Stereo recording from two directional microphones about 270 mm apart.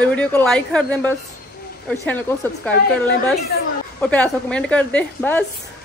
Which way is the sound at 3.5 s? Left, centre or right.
Left.